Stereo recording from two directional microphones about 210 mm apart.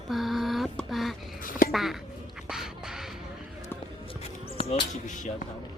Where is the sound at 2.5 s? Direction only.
Centre (ahead or behind).